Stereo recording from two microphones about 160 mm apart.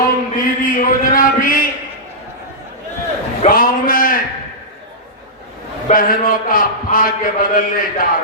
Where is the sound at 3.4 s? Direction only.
60° left (ahead or behind).